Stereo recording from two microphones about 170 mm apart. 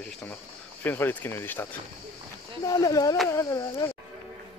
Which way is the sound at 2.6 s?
20° left (ahead or behind).